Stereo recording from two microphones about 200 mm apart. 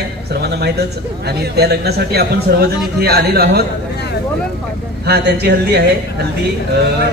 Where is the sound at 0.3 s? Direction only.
55° right (ahead or behind).